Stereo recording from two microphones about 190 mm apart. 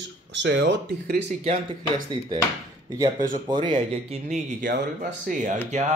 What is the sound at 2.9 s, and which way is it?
Speech, 20° right (ahead or behind).